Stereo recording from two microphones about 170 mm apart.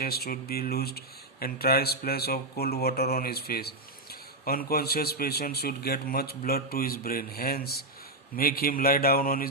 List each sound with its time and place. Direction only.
0.0 s speech: 65° left (ahead or behind)